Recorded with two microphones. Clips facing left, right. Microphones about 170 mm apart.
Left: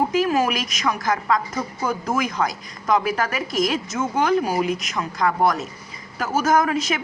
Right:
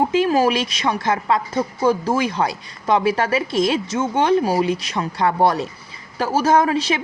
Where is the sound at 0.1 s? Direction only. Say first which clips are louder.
Right 3 dB; 30° right (ahead or behind).